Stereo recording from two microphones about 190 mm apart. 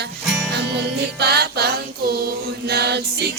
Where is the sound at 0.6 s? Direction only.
60° right (ahead or behind).